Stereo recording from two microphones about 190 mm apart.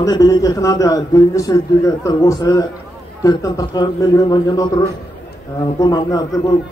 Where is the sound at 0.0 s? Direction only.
20° left (ahead or behind).